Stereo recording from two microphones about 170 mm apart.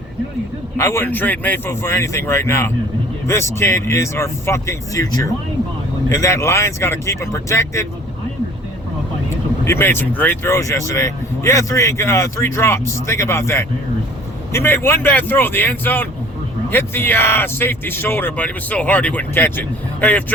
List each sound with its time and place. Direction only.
0.8 s speech: 15° left (ahead or behind)
9.6 s speech: 15° left (ahead or behind)